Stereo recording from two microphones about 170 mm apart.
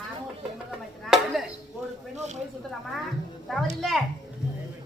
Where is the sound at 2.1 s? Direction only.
40° right (ahead or behind).